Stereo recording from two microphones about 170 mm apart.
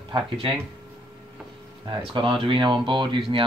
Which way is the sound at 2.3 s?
30° right (ahead or behind).